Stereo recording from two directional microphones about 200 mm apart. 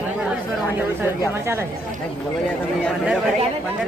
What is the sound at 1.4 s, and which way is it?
Speech, 10° right (ahead or behind).